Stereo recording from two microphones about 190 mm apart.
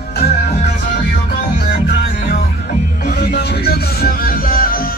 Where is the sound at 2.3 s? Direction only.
50° left (ahead or behind).